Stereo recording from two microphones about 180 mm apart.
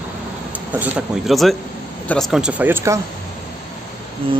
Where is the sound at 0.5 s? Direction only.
10° right (ahead or behind).